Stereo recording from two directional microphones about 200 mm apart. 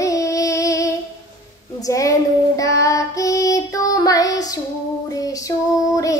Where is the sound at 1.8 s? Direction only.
15° left (ahead or behind).